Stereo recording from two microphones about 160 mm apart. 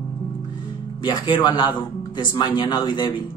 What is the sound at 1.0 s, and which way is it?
Speech, 30° left (ahead or behind).